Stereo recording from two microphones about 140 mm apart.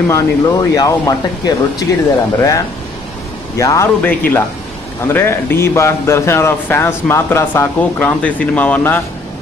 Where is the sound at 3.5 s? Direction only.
20° left (ahead or behind).